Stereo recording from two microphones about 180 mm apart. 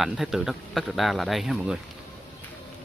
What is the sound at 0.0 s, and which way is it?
Speech, centre (ahead or behind).